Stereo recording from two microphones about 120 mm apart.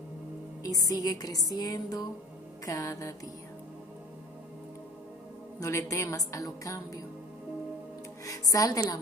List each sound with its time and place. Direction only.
0.6 s a woman's voice: 30° left (ahead or behind)
5.6 s a woman's voice: 25° left (ahead or behind)
8.3 s speech: 30° left (ahead or behind)